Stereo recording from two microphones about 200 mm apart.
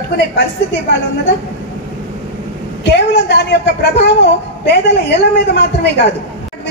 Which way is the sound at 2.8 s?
60° left (ahead or behind).